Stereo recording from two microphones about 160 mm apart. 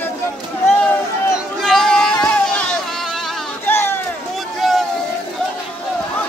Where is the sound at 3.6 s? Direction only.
15° left (ahead or behind).